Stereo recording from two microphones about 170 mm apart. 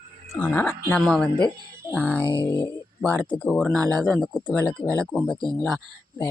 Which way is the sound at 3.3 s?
5° left (ahead or behind).